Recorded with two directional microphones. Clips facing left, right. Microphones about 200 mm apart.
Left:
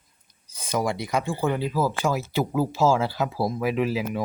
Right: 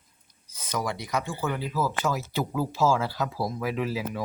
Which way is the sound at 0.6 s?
30° left (ahead or behind).